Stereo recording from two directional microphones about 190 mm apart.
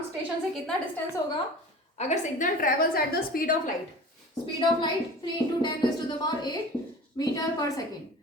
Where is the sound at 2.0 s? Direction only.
40° left (ahead or behind).